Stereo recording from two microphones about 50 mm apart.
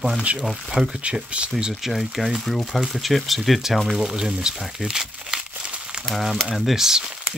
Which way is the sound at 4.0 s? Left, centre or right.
Centre.